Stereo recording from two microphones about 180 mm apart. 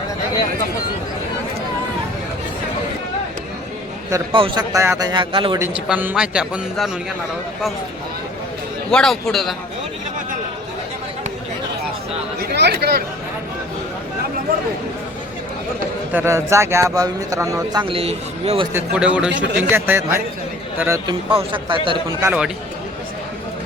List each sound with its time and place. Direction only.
4.3 s a man's voice: 30° right (ahead or behind)
4.7 s a man's voice: 15° right (ahead or behind)
5.5 s a man's voice: 10° right (ahead or behind)
8.9 s a man's voice: 5° left (ahead or behind)
12.4 s speech: 70° right (ahead or behind)
16.1 s a man's voice: 15° right (ahead or behind); by 18.7 s 30° right (ahead or behind)
18.7 s a man's voice: 5° right (ahead or behind)
21.2 s a man's voice: 30° right (ahead or behind)
22.2 s a man's voice: 5° right (ahead or behind)